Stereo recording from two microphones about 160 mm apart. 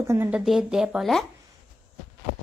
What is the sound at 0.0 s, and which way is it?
Speech, 15° right (ahead or behind).